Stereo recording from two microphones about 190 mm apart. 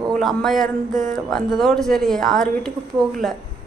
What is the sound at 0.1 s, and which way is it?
A woman's voice, centre (ahead or behind).